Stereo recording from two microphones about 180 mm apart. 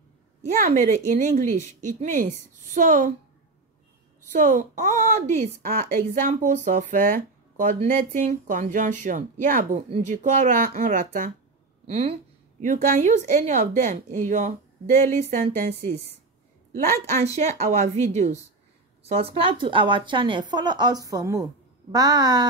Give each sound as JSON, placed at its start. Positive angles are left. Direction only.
{"t": 0.6, "sound": "speech", "side_deg": -45}
{"t": 4.3, "sound": "speech", "side_deg": -45}
{"t": 11.8, "sound": "a sound", "side_deg": -35}
{"t": 12.8, "sound": "speech", "side_deg": -45}
{"t": 17.2, "sound": "a woman's voice", "side_deg": -40}